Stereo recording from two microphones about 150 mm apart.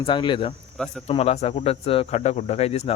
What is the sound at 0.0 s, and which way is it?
A man's voice, 30° left (ahead or behind).